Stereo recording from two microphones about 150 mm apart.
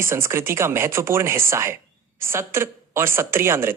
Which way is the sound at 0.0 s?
15° right (ahead or behind).